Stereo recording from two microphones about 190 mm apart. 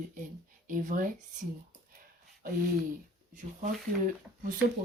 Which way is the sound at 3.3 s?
40° right (ahead or behind).